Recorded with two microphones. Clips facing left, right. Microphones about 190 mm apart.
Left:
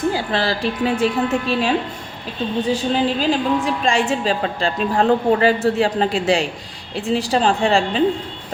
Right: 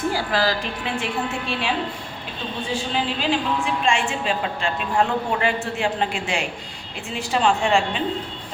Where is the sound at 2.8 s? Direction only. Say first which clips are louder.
Left 6 dB; 40° left (ahead or behind).